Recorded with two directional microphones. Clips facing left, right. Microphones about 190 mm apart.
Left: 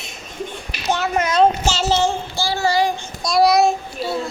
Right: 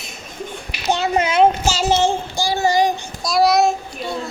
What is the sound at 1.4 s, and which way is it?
A child's voice, 10° right (ahead or behind).